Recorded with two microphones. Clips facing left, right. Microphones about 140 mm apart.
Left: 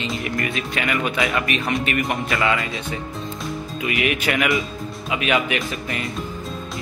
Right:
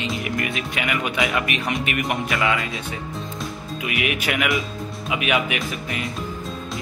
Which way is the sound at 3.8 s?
5° right (ahead or behind).